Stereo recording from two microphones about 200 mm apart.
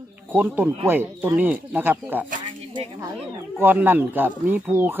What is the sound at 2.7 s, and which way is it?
Speech, 25° right (ahead or behind).